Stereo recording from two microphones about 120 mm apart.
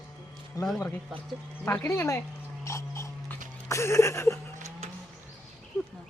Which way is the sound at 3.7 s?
20° left (ahead or behind).